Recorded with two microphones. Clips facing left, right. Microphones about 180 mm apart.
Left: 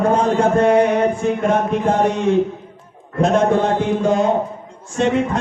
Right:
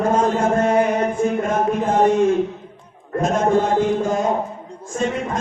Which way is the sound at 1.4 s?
65° left (ahead or behind).